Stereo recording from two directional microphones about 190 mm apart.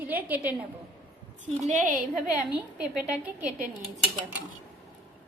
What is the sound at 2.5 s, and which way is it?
A woman's voice, 10° right (ahead or behind).